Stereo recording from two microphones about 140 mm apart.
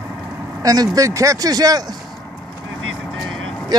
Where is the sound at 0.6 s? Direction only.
25° right (ahead or behind).